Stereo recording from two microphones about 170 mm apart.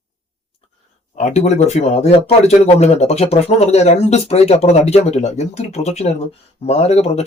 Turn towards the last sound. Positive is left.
turn(degrees=40)  # may be behind; listen again after turning